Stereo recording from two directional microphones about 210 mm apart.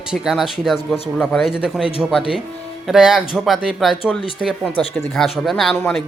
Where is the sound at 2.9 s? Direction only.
5° right (ahead or behind).